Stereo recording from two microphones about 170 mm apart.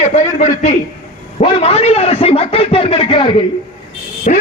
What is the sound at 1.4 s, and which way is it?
A man's voice, 35° left (ahead or behind).